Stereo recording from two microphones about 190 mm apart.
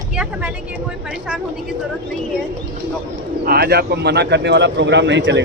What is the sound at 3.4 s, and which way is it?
Speech, 50° right (ahead or behind).